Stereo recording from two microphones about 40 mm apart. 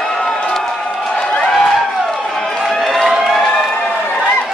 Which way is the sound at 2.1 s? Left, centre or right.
Centre.